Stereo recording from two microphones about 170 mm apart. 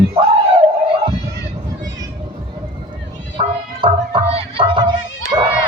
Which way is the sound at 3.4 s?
30° right (ahead or behind).